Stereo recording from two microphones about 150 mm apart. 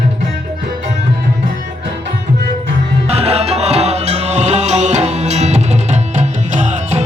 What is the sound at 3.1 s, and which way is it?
Music, 45° right (ahead or behind).